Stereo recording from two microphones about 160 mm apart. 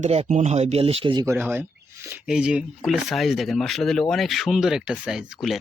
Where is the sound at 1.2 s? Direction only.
15° right (ahead or behind).